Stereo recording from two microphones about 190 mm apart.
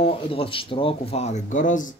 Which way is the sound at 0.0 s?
30° left (ahead or behind).